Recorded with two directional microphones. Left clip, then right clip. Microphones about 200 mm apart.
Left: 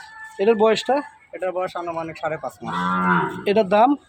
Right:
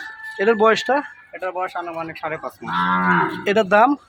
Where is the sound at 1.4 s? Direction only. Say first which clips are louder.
Even; 55° left (ahead or behind).